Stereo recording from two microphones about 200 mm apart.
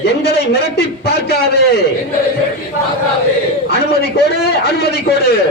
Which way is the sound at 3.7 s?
55° left (ahead or behind).